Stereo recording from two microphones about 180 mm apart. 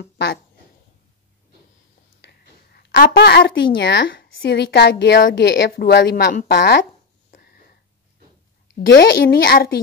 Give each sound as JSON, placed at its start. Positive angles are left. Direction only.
{"t": 0.0, "sound": "speech", "side_deg": 70}
{"t": 2.2, "sound": "a woman's voice", "side_deg": 65}
{"t": 7.2, "sound": "a sound", "side_deg": 45}
{"t": 8.8, "sound": "a child's voice", "side_deg": 75}